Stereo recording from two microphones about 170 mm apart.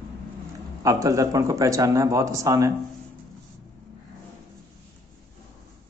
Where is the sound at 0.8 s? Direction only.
20° right (ahead or behind).